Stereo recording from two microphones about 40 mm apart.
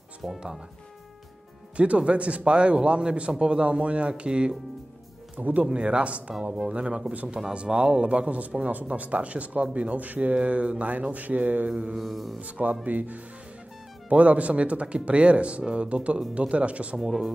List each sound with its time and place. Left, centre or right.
0.2 s speech: centre
1.8 s a man's voice: right
5.3 s speech: right
5.7 s a man's voice: right
10.3 s speech: right
11.7 s a man's voice: right
12.0 s speech: centre
12.4 s speech: right